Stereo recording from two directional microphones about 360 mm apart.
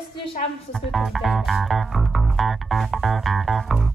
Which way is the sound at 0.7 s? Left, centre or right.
Centre.